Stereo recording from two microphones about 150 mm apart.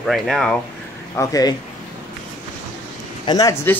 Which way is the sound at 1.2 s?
25° left (ahead or behind).